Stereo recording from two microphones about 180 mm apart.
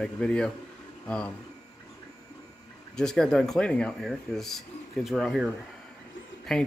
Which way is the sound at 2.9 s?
5° left (ahead or behind).